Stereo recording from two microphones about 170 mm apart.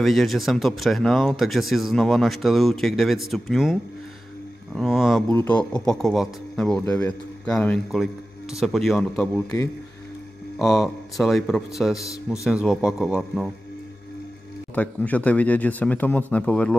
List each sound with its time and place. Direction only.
0.0 s speech: centre (ahead or behind)
4.7 s speech: centre (ahead or behind)
5.3 s speech: 10° left (ahead or behind)
6.8 s speech: 15° left (ahead or behind)
7.4 s speech: 5° left (ahead or behind)
9.2 s speech: 15° left (ahead or behind)
10.6 s speech: centre (ahead or behind)
14.8 s speech: 10° left (ahead or behind)